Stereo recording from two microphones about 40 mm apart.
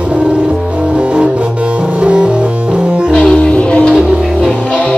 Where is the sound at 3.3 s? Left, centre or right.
Left.